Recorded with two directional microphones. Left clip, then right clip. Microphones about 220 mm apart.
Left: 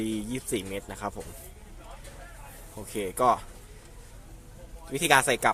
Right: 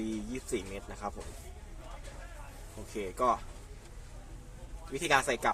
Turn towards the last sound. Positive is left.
turn(degrees=35)  # may be behind; listen again after turning